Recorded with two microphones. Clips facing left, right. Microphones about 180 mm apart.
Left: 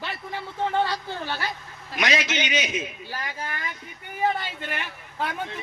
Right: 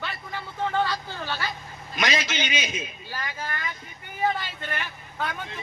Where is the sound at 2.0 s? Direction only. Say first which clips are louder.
Left 2 dB; 65° left (ahead or behind).